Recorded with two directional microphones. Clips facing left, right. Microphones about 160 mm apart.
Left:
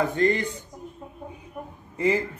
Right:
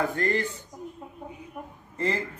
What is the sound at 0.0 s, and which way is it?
Speech, 20° left (ahead or behind).